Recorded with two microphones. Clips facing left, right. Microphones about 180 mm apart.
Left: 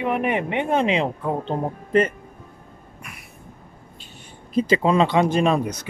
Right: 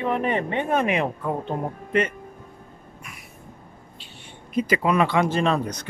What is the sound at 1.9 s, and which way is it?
Speech, 40° left (ahead or behind).